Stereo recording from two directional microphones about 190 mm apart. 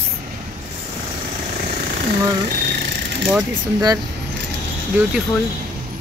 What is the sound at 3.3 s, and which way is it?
Speech, 20° right (ahead or behind).